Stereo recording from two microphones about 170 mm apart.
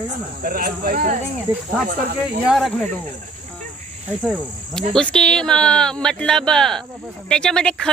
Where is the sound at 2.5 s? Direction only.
Centre (ahead or behind).